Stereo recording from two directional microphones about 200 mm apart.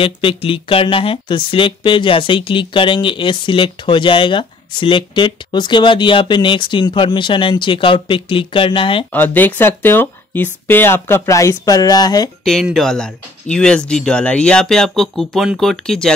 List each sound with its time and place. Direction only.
0.0 s speech: 25° left (ahead or behind)
9.1 s speech: 10° left (ahead or behind)
12.4 s speech: centre (ahead or behind)